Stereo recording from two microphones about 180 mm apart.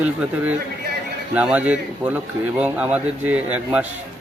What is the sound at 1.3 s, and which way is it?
A man's voice, 5° right (ahead or behind).